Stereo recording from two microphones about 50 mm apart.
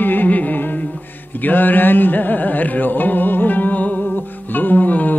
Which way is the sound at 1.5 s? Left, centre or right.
Left.